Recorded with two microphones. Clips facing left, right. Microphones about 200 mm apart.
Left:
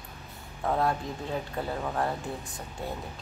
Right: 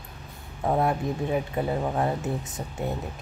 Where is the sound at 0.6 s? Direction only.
20° right (ahead or behind).